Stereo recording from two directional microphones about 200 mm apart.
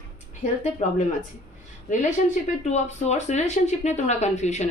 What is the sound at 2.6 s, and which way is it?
A woman's voice, 35° left (ahead or behind).